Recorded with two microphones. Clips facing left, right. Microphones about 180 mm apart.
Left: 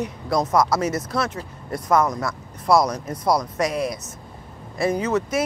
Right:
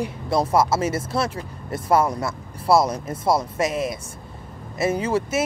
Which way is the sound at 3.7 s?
Centre (ahead or behind).